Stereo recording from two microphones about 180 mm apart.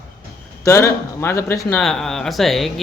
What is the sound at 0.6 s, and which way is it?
Speech, 15° left (ahead or behind).